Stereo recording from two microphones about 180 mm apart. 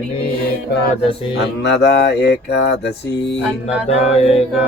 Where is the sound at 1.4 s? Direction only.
70° left (ahead or behind).